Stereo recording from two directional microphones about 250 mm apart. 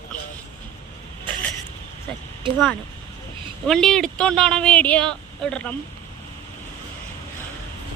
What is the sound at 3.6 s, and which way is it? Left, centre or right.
Speech, centre.